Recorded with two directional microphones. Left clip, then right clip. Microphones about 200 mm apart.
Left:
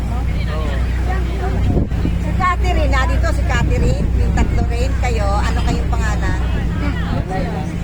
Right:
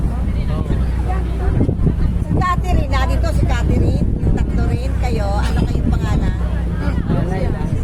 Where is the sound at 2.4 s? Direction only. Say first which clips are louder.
Left 3 dB; 20° right (ahead or behind).